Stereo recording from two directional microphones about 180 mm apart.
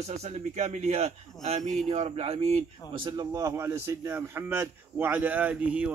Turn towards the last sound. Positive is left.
turn(degrees=-5)  # may be behind; listen again after turning